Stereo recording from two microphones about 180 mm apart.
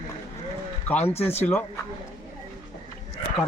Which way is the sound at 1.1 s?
35° left (ahead or behind).